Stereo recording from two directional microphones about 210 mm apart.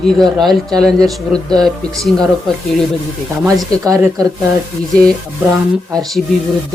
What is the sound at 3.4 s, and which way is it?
Speech, 15° right (ahead or behind).